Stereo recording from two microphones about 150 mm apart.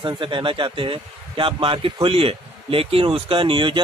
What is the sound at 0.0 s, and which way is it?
Speech, 35° right (ahead or behind).